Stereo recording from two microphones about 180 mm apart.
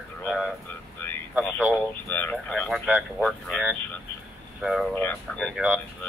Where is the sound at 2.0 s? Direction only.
10° left (ahead or behind).